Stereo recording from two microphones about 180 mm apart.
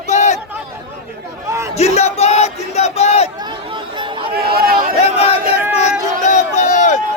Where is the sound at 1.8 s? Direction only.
35° left (ahead or behind).